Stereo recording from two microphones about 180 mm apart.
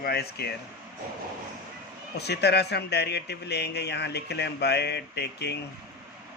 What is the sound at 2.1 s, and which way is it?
Speech, 65° left (ahead or behind).